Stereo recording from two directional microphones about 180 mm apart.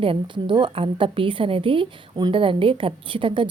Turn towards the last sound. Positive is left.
turn(degrees=-30)  # may be behind; listen again after turning